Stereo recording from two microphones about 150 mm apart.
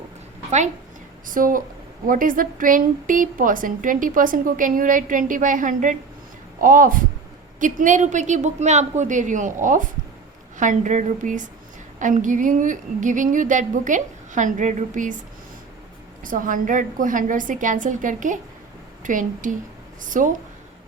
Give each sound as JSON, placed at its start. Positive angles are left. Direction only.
{"t": 1.3, "sound": "a woman's voice", "side_deg": -65}
{"t": 16.2, "sound": "a woman's voice", "side_deg": -65}